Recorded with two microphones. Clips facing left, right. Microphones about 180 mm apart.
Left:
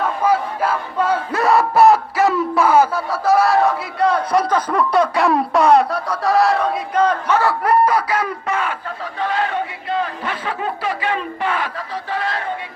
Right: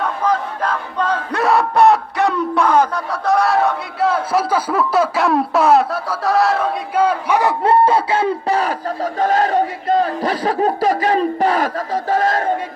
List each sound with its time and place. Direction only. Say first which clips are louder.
0.0 s battle cry: left 1 dB; 10° left (ahead or behind); by 7.5 s 15° right (ahead or behind)
7.6 s a sound: right 2 dB; 25° right (ahead or behind)
9.1 s battle cry: right 5 dB; 45° right (ahead or behind)